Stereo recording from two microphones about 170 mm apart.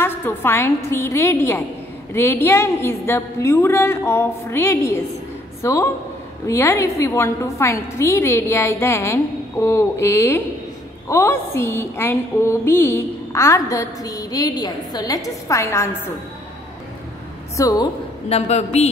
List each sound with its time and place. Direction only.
0.0 s a woman's voice: 10° left (ahead or behind)
17.6 s a woman's voice: 20° left (ahead or behind)
18.3 s a man's voice: 40° left (ahead or behind)